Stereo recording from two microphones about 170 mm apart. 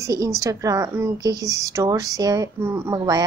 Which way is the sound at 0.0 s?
20° right (ahead or behind).